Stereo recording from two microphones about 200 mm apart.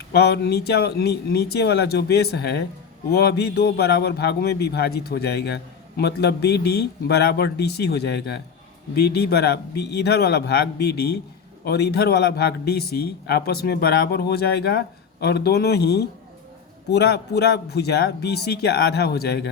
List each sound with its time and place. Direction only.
0.2 s a man's voice: 55° left (ahead or behind)